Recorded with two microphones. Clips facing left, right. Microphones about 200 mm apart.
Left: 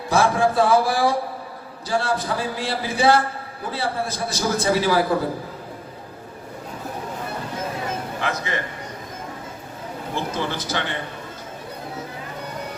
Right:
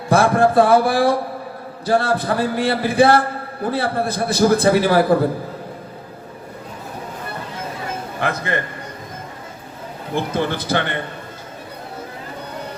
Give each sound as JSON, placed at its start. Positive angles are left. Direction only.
{"t": 0.1, "sound": "a man's voice", "side_deg": -55}
{"t": 8.2, "sound": "a man's voice", "side_deg": -55}
{"t": 10.2, "sound": "a man's voice", "side_deg": -55}